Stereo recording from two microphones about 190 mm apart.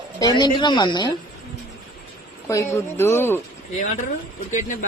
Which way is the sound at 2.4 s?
15° left (ahead or behind).